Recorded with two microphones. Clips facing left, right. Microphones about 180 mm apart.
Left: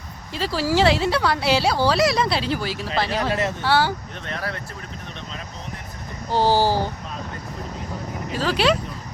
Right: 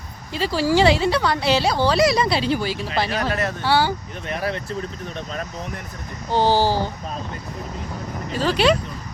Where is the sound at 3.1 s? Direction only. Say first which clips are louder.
Even; 20° left (ahead or behind).